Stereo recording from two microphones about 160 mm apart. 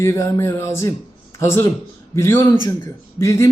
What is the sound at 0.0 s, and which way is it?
A man's voice, 15° left (ahead or behind).